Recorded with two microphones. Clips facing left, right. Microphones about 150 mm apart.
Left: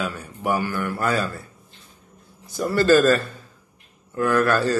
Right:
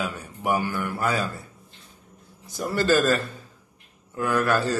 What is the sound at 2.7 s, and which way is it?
Speech, 15° right (ahead or behind).